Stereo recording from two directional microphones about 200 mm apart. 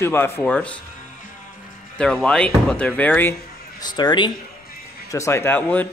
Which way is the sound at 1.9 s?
5° left (ahead or behind).